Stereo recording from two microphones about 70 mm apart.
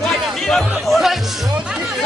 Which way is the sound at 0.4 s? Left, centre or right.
Centre.